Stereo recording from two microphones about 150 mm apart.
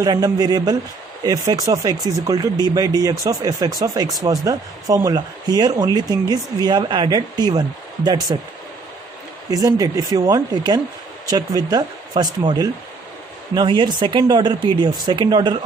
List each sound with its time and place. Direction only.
0.0 s speech: 25° right (ahead or behind)
9.5 s speech: 25° right (ahead or behind)